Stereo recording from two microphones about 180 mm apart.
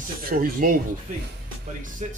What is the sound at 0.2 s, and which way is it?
Speech, 55° right (ahead or behind).